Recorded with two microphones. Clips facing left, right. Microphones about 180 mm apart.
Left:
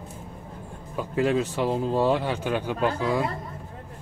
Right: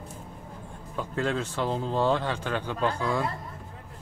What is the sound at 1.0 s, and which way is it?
Speech, 10° left (ahead or behind).